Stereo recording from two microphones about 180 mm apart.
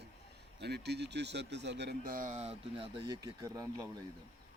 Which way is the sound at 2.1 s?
45° right (ahead or behind).